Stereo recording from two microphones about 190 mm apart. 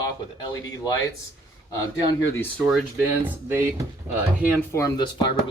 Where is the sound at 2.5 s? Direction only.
Centre (ahead or behind).